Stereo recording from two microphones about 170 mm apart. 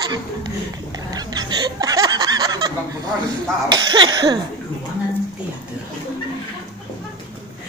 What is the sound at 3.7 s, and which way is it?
Speech, 25° right (ahead or behind).